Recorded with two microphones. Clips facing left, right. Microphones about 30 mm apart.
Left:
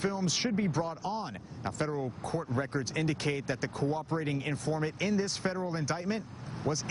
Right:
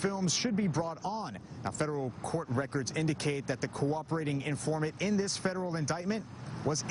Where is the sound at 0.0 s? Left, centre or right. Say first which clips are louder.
Left 1 dB; centre.